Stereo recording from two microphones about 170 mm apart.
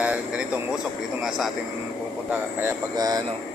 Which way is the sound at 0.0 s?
10° right (ahead or behind).